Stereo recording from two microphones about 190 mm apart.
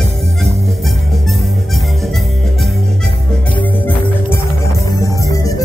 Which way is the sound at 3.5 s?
10° left (ahead or behind).